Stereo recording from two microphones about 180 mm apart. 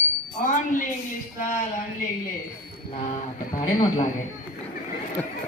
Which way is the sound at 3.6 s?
25° left (ahead or behind).